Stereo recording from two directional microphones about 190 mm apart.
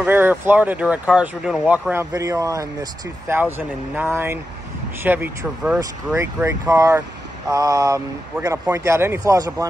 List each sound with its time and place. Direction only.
0.0 s speech: 10° right (ahead or behind)